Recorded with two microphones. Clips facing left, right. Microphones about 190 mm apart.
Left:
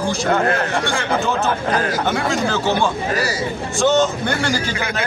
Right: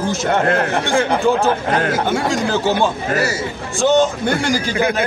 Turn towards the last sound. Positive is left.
turn(degrees=-15)  # may be behind; listen again after turning